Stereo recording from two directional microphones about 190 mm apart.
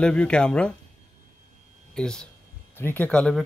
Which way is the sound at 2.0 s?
5° left (ahead or behind).